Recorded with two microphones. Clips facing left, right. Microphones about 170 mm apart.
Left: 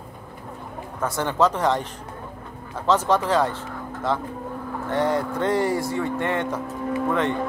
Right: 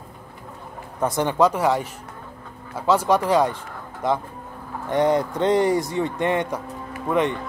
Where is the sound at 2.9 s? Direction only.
10° right (ahead or behind).